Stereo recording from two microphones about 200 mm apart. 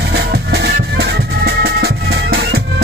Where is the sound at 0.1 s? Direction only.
55° right (ahead or behind).